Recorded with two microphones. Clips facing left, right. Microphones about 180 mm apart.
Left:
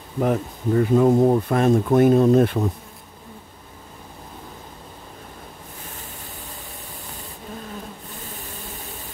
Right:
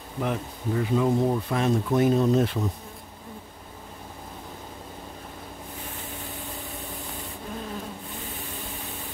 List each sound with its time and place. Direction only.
0.2 s speech: 45° left (ahead or behind)